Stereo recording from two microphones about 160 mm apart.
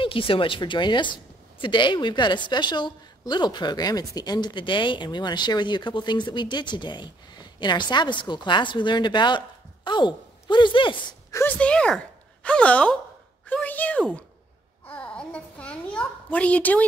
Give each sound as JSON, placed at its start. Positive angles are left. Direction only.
{"t": 0.0, "sound": "a woman's voice", "side_deg": 35}
{"t": 11.3, "sound": "speech", "side_deg": 10}
{"t": 14.9, "sound": "babbling", "side_deg": 5}